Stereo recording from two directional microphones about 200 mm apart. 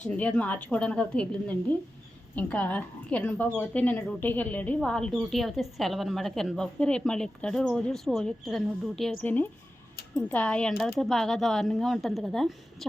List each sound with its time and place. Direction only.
0.0 s a woman's voice: 5° left (ahead or behind)